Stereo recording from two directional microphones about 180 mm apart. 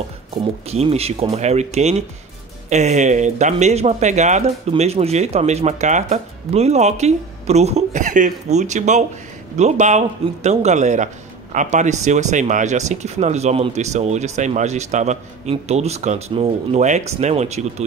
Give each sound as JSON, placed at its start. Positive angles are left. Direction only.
{"t": 0.3, "sound": "speech", "side_deg": -35}